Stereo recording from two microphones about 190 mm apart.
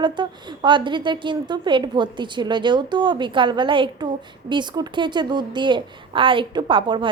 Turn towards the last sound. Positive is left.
turn(degrees=-25)  # may be behind; listen again after turning